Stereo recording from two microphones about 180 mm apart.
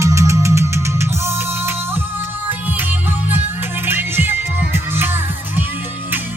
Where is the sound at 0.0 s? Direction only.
15° right (ahead or behind).